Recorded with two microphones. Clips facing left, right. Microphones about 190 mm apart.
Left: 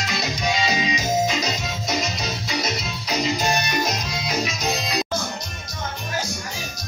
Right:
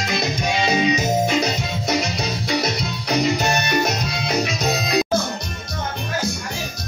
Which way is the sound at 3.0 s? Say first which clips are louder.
Right 4 dB; 65° right (ahead or behind).